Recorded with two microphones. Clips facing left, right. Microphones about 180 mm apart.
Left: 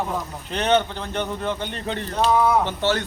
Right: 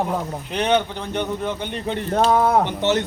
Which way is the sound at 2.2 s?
50° right (ahead or behind).